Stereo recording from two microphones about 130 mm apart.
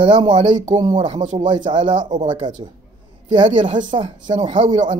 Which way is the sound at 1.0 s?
60° right (ahead or behind).